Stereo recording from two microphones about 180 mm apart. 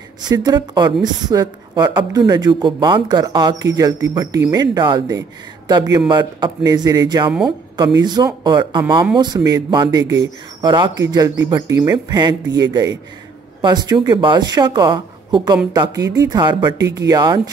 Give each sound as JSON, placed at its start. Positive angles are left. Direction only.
{"t": 0.2, "sound": "speech", "side_deg": -20}
{"t": 13.6, "sound": "speech", "side_deg": -25}